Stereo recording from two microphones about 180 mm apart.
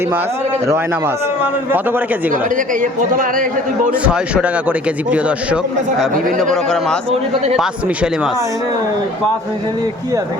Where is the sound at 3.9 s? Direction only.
5° right (ahead or behind).